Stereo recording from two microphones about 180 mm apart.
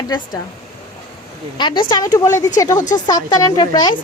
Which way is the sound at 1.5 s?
25° left (ahead or behind).